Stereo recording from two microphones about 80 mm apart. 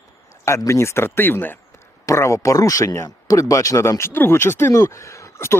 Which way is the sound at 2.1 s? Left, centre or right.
Left.